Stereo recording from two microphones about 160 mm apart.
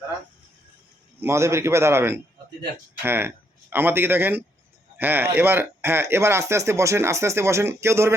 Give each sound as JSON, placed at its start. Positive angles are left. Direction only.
{"t": 1.2, "sound": "speech", "side_deg": -15}